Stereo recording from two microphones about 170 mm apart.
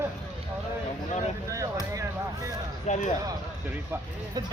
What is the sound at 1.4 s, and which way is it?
Speech, 20° right (ahead or behind).